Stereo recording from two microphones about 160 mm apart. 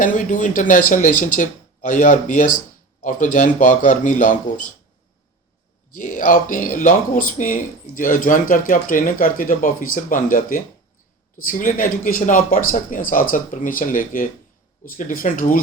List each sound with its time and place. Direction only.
0.0 s speech: 55° left (ahead or behind)
5.9 s speech: 55° left (ahead or behind)